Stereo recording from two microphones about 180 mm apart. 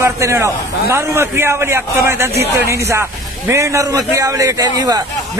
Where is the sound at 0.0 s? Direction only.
15° right (ahead or behind).